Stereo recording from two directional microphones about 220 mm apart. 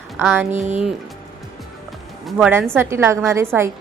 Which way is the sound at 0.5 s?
30° right (ahead or behind).